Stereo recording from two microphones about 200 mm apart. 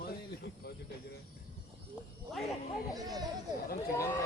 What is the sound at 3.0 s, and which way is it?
Speech, 20° right (ahead or behind).